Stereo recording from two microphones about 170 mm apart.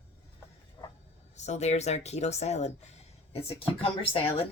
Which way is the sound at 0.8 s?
20° left (ahead or behind).